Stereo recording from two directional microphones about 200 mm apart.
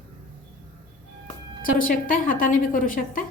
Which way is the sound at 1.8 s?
45° left (ahead or behind).